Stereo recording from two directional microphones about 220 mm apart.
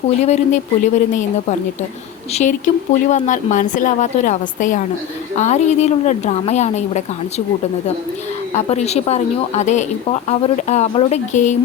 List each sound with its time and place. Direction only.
0.2 s speech: 30° left (ahead or behind)
8.5 s speech: 30° left (ahead or behind)